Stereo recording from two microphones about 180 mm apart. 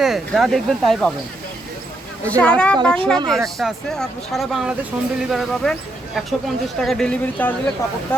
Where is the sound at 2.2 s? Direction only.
5° left (ahead or behind).